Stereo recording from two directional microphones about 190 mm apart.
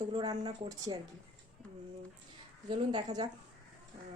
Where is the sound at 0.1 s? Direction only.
25° right (ahead or behind).